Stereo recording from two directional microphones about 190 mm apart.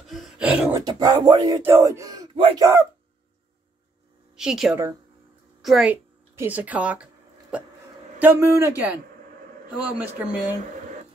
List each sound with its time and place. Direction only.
0.0 s a sound: centre (ahead or behind)
0.7 s speech: 20° right (ahead or behind)
4.4 s a woman's voice: 5° right (ahead or behind)